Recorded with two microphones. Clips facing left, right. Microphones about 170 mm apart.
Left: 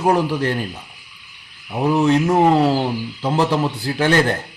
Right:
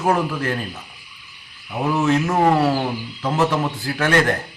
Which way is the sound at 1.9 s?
30° left (ahead or behind).